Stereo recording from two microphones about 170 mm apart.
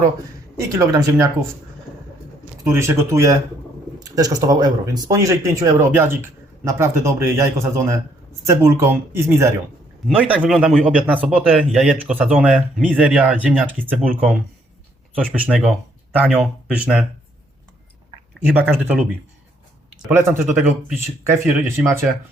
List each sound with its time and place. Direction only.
0.7 s speech: 20° right (ahead or behind)
2.6 s speech: 15° right (ahead or behind)
15.4 s speech: 5° right (ahead or behind)
18.5 s speech: 10° right (ahead or behind)
20.1 s speech: 10° right (ahead or behind)